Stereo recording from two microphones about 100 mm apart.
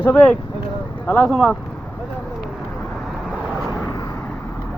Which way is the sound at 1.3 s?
Centre (ahead or behind).